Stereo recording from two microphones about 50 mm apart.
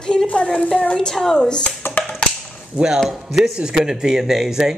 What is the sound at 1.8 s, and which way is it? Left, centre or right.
Finger snapping, left.